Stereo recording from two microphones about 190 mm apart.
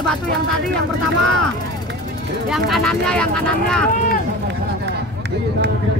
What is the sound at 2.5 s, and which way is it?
Speech, centre (ahead or behind).